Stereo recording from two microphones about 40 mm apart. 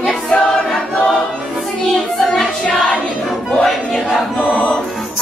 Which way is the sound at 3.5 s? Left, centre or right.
Centre.